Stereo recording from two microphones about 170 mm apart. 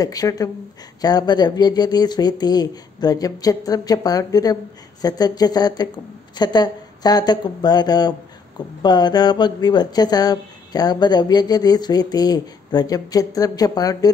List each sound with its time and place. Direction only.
0.0 s speech: 20° left (ahead or behind)